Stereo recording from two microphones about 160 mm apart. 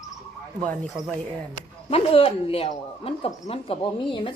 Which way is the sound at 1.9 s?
35° left (ahead or behind).